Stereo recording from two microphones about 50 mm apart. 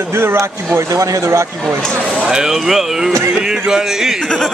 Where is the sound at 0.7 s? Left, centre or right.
Right.